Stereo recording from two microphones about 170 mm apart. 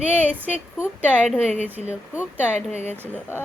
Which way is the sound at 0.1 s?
10° right (ahead or behind).